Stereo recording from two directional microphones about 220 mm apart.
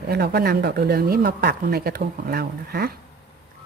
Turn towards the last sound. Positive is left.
turn(degrees=-45)  # may be behind; listen again after turning